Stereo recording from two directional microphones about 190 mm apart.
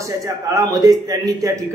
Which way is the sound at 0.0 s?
15° right (ahead or behind).